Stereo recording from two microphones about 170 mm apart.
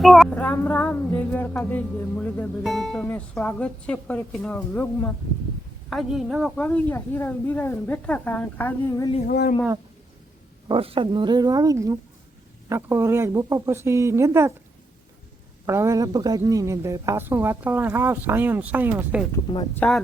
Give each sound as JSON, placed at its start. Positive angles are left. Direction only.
{"t": 0.0, "sound": "a sound", "side_deg": 0}
{"t": 5.9, "sound": "a woman's voice", "side_deg": 0}
{"t": 6.6, "sound": "a sound", "side_deg": 10}
{"t": 9.2, "sound": "speech", "side_deg": 75}
{"t": 10.7, "sound": "a woman's voice", "side_deg": -35}
{"t": 15.6, "sound": "a woman's voice", "side_deg": -15}
{"t": 19.5, "sound": "speech", "side_deg": 25}